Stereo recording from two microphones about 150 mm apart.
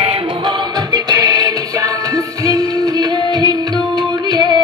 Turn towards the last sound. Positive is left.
turn(degrees=-25)  # may be behind; listen again after turning